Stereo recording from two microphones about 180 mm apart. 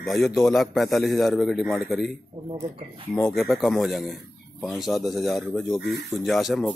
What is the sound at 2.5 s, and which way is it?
Speech, 25° right (ahead or behind).